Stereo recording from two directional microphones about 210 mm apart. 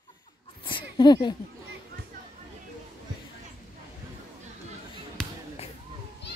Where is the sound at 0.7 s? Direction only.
20° left (ahead or behind).